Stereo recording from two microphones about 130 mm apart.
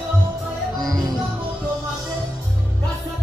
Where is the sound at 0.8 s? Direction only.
30° right (ahead or behind).